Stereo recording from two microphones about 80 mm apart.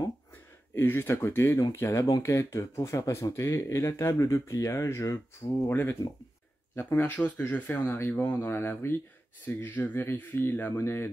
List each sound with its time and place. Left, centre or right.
0.7 s speech: left
7.0 s speech: centre